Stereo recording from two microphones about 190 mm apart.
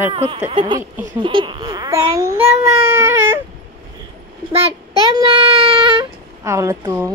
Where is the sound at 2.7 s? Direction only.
15° right (ahead or behind).